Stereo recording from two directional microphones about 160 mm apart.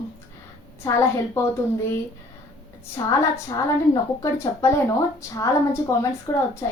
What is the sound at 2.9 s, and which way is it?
Speech, 20° left (ahead or behind).